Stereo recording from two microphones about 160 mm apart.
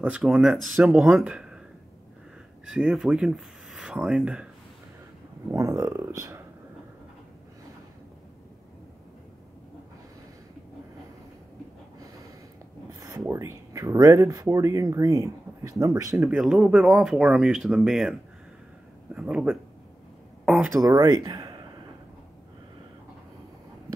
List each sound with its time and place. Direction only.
0.0 s speech: 5° right (ahead or behind)
2.6 s speech: 5° right (ahead or behind)
5.5 s speech: 20° right (ahead or behind)
13.3 s speech: 20° right (ahead or behind)
16.2 s speech: 5° right (ahead or behind)
19.1 s speech: 5° right (ahead or behind)
20.4 s a sound: centre (ahead or behind)
20.7 s speech: 20° right (ahead or behind)